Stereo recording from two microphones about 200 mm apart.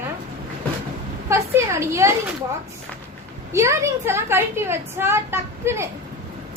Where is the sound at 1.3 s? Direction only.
15° right (ahead or behind).